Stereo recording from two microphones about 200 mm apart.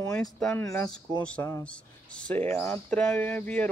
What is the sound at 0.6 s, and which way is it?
Speech, 15° left (ahead or behind).